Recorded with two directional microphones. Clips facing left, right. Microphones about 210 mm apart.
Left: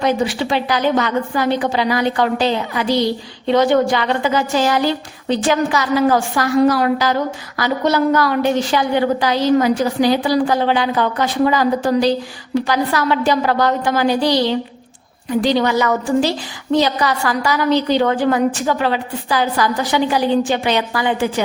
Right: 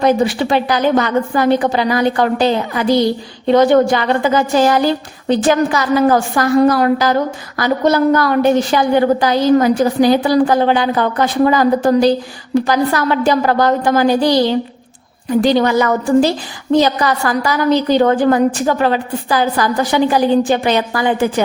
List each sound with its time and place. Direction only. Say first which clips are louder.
0.0 s a woman's voice: right 4 dB; 40° right (ahead or behind)